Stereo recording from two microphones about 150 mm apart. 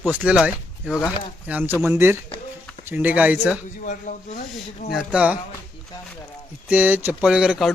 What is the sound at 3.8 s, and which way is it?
Speech, 60° left (ahead or behind).